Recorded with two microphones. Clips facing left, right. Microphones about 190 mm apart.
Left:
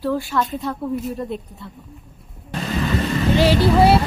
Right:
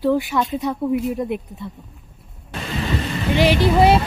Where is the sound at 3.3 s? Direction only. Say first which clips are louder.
Even; 15° right (ahead or behind).